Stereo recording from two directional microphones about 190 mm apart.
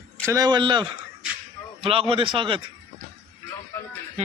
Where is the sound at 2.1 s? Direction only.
25° right (ahead or behind).